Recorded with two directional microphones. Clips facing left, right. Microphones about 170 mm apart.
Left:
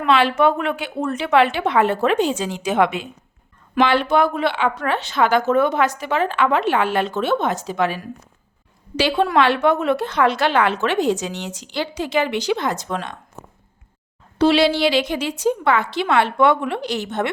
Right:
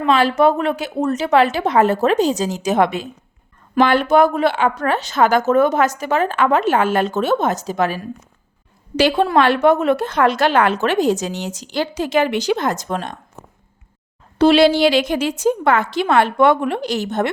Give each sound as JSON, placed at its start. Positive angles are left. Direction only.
{"t": 0.0, "sound": "a woman's voice", "side_deg": -40}
{"t": 14.3, "sound": "speech", "side_deg": -45}